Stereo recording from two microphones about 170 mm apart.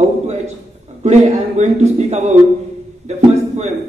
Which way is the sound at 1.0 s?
40° right (ahead or behind).